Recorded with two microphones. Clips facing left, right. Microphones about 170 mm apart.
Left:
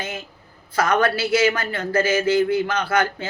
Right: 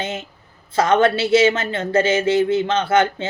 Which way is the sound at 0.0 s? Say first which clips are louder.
Right 4 dB; 25° right (ahead or behind).